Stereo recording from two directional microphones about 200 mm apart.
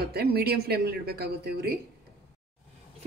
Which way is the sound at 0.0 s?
50° right (ahead or behind).